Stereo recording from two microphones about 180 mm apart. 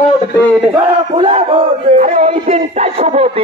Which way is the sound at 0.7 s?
30° right (ahead or behind).